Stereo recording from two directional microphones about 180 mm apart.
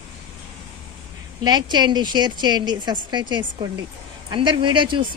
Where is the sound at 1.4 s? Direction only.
25° right (ahead or behind).